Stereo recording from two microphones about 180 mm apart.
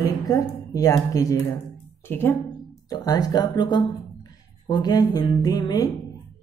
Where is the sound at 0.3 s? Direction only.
20° left (ahead or behind).